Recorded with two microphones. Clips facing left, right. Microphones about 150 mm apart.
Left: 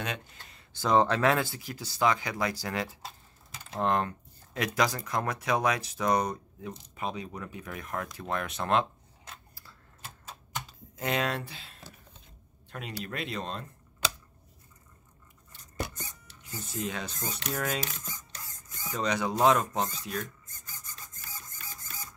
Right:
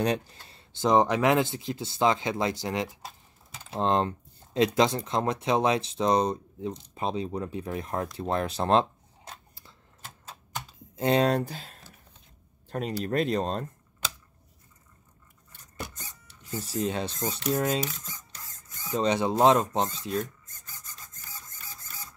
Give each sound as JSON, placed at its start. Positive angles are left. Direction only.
{"t": 0.0, "sound": "speech", "side_deg": -35}
{"t": 11.0, "sound": "speech", "side_deg": -35}
{"t": 16.4, "sound": "speech", "side_deg": -35}
{"t": 18.4, "sound": "a sound", "side_deg": 10}
{"t": 18.9, "sound": "speech", "side_deg": -25}
{"t": 20.7, "sound": "printer", "side_deg": 15}